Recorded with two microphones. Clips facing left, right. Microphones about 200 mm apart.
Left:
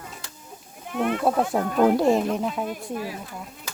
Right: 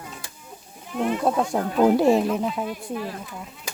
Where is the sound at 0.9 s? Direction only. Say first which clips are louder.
Even; 60° left (ahead or behind).